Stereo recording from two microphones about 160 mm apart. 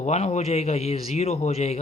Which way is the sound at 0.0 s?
45° left (ahead or behind).